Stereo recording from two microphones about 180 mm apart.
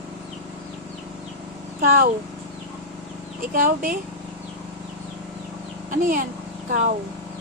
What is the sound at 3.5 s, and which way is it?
Speech, 50° right (ahead or behind).